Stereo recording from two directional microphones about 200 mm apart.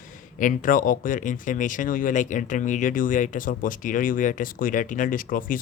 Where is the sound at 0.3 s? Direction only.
40° left (ahead or behind).